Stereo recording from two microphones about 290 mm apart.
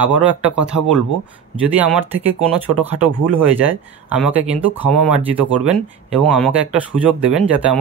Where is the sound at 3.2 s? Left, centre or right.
Right.